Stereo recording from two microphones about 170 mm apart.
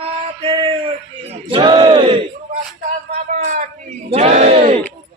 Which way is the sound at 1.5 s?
30° right (ahead or behind).